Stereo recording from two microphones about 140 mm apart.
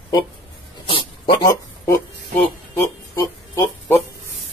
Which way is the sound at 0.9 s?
35° left (ahead or behind).